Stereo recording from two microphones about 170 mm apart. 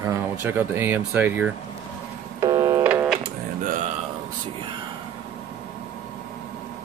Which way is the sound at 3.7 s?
50° right (ahead or behind).